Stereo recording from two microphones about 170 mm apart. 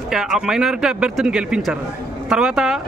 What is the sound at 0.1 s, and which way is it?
A man's voice, centre (ahead or behind).